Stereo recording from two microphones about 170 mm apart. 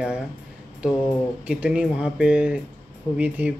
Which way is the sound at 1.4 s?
5° right (ahead or behind).